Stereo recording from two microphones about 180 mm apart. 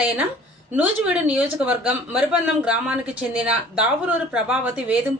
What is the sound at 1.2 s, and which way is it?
Speech, 10° right (ahead or behind).